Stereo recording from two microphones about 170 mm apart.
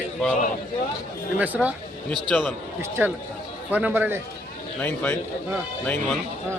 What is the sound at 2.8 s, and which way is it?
A man's voice, 15° right (ahead or behind).